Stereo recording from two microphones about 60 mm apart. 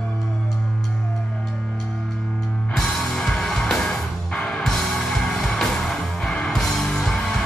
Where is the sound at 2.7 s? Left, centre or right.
Centre.